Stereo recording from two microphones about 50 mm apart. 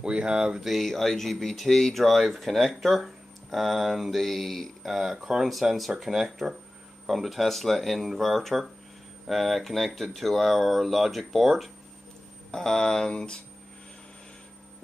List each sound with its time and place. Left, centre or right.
0.0 s speech: centre
0.7 s speech: centre
12.4 s speech: centre